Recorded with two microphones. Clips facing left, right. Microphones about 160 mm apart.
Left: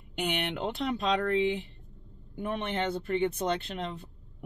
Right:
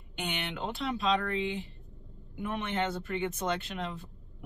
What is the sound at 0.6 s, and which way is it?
Speech, 40° left (ahead or behind).